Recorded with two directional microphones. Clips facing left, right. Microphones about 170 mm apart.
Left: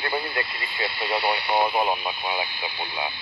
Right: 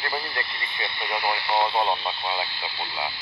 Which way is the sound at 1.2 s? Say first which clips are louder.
Even; 20° left (ahead or behind).